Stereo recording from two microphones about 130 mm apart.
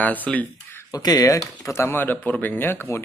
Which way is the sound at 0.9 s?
25° left (ahead or behind).